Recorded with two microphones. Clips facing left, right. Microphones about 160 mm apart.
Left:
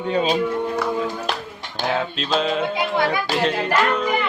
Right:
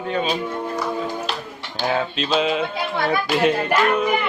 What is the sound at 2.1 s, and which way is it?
Music, 5° right (ahead or behind).